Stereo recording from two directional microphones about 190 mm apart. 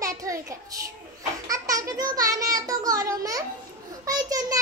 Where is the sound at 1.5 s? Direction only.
15° right (ahead or behind).